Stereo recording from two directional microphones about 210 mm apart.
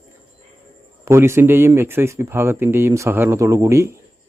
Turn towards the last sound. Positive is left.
turn(degrees=-15)  # may be behind; listen again after turning